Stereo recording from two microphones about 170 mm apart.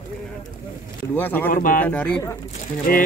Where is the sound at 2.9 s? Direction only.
55° left (ahead or behind).